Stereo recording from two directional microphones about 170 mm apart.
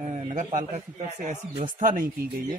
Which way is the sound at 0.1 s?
45° right (ahead or behind).